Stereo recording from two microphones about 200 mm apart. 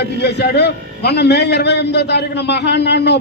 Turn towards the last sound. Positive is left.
turn(degrees=60)  # may be behind; listen again after turning